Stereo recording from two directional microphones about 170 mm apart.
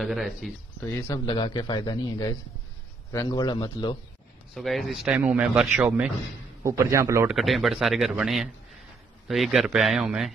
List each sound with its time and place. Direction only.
0.0 s speech: centre (ahead or behind)
0.8 s a man's voice: 15° left (ahead or behind)
4.6 s speech: centre (ahead or behind); by 7.2 s 15° right (ahead or behind)
7.2 s speech: centre (ahead or behind)